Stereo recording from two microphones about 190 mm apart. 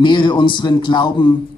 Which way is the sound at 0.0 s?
25° left (ahead or behind).